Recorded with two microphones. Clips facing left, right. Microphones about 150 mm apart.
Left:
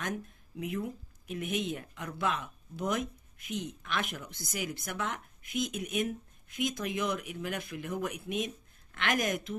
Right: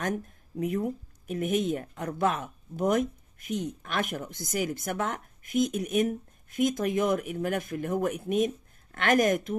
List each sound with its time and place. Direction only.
0.0 s speech: 40° right (ahead or behind)